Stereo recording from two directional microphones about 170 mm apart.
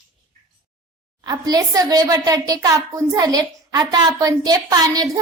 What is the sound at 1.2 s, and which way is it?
A child's voice, 25° right (ahead or behind).